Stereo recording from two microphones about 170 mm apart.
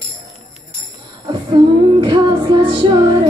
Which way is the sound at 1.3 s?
25° right (ahead or behind).